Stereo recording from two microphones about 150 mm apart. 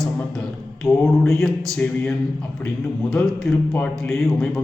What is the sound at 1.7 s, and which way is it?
Speech, 10° left (ahead or behind).